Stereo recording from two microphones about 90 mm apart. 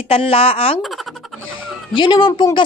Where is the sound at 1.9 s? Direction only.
65° left (ahead or behind).